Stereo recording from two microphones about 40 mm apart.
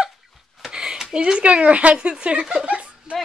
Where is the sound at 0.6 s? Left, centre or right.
Centre.